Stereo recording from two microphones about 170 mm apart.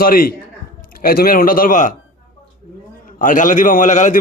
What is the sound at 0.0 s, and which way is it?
A man's voice, 60° left (ahead or behind).